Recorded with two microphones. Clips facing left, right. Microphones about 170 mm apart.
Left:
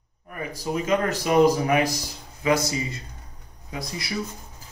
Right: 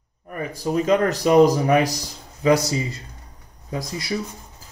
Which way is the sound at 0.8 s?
40° right (ahead or behind).